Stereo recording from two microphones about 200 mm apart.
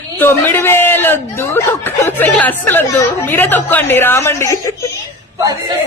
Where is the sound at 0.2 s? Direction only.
10° left (ahead or behind).